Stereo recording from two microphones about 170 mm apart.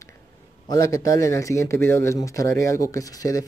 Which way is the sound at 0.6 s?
20° left (ahead or behind).